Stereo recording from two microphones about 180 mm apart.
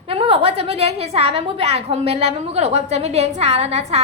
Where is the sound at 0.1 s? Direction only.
30° right (ahead or behind).